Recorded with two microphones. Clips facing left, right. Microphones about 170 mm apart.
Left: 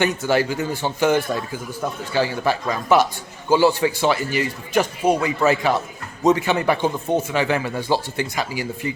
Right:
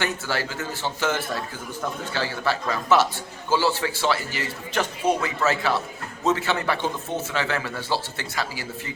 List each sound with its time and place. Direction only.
0.0 s speech: 15° left (ahead or behind)